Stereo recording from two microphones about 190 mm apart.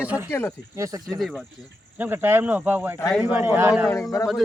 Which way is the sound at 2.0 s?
10° right (ahead or behind).